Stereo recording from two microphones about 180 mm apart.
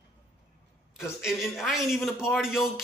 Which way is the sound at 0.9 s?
5° right (ahead or behind).